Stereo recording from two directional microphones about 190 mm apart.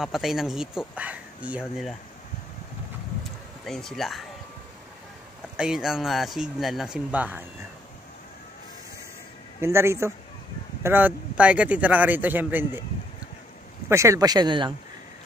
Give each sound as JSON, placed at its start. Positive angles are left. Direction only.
{"t": 0.0, "sound": "speech", "side_deg": 0}
{"t": 3.6, "sound": "speech", "side_deg": 0}
{"t": 5.6, "sound": "speech", "side_deg": -5}
{"t": 9.6, "sound": "speech", "side_deg": -15}
{"t": 13.8, "sound": "speech", "side_deg": -15}